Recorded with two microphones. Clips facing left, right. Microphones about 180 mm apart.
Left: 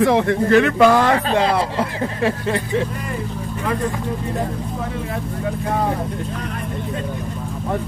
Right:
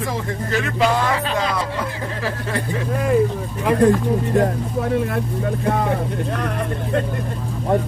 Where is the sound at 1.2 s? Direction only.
30° left (ahead or behind).